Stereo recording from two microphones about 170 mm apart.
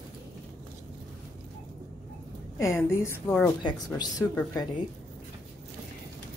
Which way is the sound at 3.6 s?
25° left (ahead or behind).